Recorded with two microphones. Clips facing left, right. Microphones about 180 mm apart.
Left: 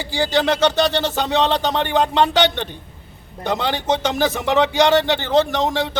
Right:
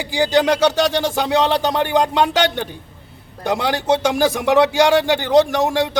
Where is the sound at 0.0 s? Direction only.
15° right (ahead or behind).